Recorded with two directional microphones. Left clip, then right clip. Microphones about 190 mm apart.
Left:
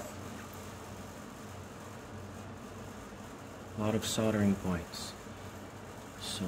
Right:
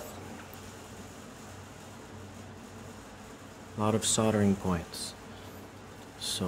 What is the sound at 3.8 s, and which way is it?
Speech, 35° right (ahead or behind).